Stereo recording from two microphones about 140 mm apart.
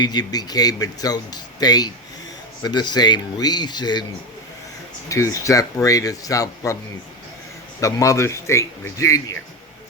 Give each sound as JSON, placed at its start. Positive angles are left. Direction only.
{"t": 0.0, "sound": "speech", "side_deg": 30}
{"t": 5.0, "sound": "speech", "side_deg": 20}
{"t": 7.8, "sound": "speech", "side_deg": 25}